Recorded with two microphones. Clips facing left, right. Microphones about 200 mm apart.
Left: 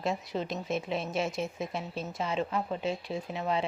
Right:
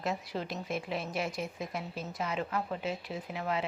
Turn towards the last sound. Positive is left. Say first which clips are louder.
# left 3 dB
turn(degrees=25)  # may be behind; listen again after turning